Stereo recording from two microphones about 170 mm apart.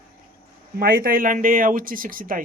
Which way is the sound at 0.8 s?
60° right (ahead or behind).